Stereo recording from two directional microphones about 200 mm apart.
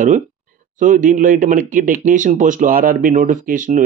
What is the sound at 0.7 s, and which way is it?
Speech, 40° right (ahead or behind).